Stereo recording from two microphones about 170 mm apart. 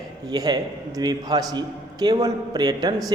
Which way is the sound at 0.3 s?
25° right (ahead or behind).